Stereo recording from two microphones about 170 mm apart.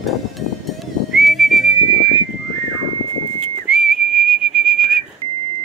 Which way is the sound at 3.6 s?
5° right (ahead or behind).